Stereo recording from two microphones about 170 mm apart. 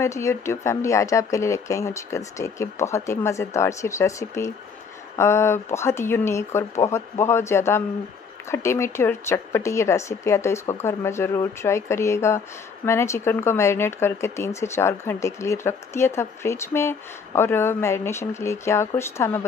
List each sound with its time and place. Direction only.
0.0 s speech: 15° left (ahead or behind)